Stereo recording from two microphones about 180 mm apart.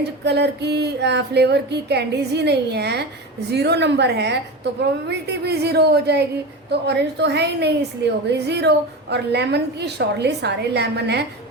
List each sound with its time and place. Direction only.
0.3 s a woman's voice: 65° right (ahead or behind)